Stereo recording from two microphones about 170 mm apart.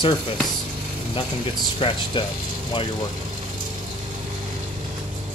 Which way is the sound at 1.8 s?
35° left (ahead or behind).